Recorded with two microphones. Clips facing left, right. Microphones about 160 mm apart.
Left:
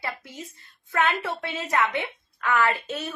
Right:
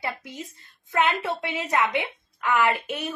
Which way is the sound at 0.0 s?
15° right (ahead or behind).